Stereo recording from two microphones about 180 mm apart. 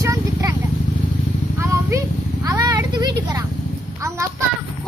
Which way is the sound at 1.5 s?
15° right (ahead or behind).